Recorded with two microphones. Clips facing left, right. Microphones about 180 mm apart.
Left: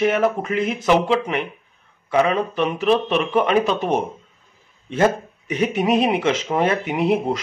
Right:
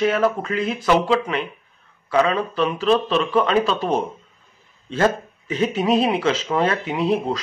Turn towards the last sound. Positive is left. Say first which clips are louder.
# left 1 dB
turn(degrees=20)  # may be behind; listen again after turning